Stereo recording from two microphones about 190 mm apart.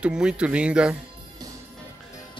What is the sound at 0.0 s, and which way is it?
Speech, 5° right (ahead or behind).